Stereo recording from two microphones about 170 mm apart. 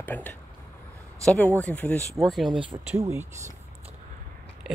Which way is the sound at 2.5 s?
30° right (ahead or behind).